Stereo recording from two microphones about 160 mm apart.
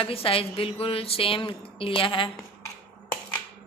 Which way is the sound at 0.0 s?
35° left (ahead or behind).